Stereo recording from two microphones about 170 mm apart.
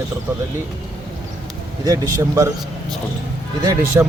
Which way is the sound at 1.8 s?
20° right (ahead or behind).